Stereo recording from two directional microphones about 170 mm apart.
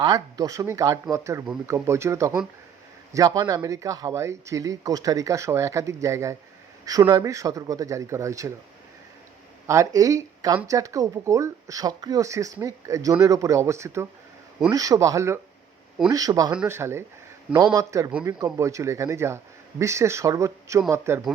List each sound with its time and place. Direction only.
0.0 s speech: 25° right (ahead or behind)
9.6 s speech: 20° right (ahead or behind)
16.5 s speech: 10° right (ahead or behind)